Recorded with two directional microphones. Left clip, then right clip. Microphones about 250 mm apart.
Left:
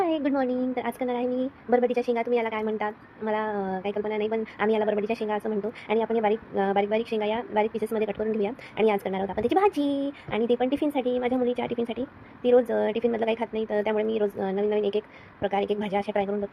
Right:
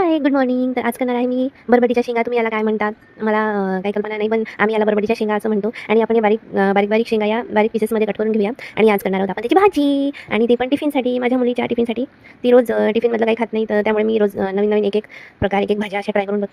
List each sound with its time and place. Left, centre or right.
0.0 s a woman's voice: right